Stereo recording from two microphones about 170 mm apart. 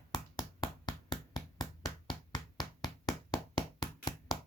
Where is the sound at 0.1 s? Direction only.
25° left (ahead or behind).